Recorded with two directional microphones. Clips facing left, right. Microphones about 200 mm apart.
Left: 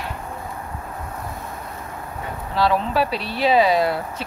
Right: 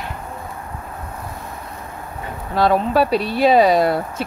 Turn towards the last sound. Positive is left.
turn(degrees=-45)  # may be behind; listen again after turning